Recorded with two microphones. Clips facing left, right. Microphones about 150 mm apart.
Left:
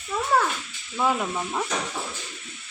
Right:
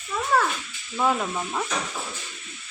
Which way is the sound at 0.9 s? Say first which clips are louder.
Even; centre (ahead or behind).